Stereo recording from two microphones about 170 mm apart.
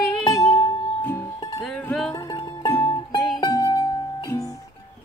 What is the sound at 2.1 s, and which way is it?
Music, 20° left (ahead or behind).